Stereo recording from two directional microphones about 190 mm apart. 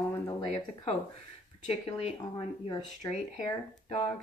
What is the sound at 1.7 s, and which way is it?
Speech, 30° left (ahead or behind).